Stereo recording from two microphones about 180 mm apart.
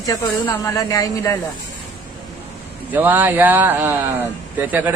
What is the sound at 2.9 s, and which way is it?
A man's voice, 10° right (ahead or behind).